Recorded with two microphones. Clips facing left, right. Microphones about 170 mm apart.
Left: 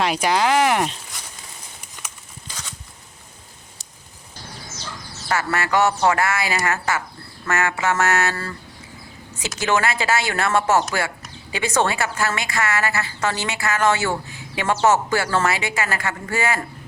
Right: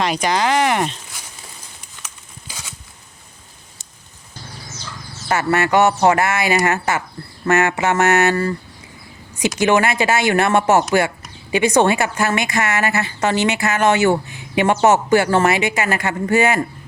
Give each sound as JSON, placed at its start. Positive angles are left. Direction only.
{"t": 0.0, "sound": "speech", "side_deg": 5}
{"t": 2.5, "sound": "a sound", "side_deg": -10}
{"t": 5.3, "sound": "a woman's voice", "side_deg": -20}